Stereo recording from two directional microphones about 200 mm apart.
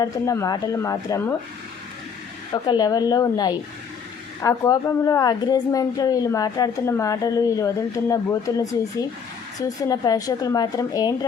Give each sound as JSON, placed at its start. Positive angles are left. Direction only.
{"t": 0.0, "sound": "a woman's voice", "side_deg": 15}
{"t": 2.6, "sound": "a woman's voice", "side_deg": 20}